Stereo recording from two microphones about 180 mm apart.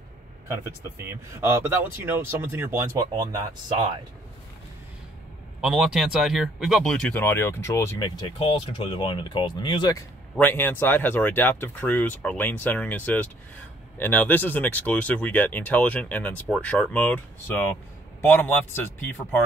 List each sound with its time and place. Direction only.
1.3 s speech: 15° right (ahead or behind)
5.6 s speech: 5° right (ahead or behind); by 8.1 s 15° left (ahead or behind)
8.2 s speech: 30° left (ahead or behind)
10.3 s speech: 10° left (ahead or behind)